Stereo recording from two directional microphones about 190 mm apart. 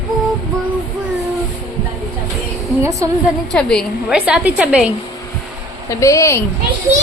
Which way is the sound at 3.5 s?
5° left (ahead or behind).